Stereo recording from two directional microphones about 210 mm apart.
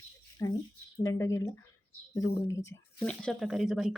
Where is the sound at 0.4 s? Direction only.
15° left (ahead or behind).